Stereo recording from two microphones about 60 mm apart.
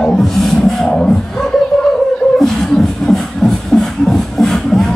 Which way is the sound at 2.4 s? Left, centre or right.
Centre.